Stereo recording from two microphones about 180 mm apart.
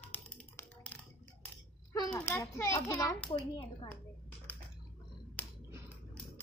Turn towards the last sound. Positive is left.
turn(degrees=10)  # may be behind; listen again after turning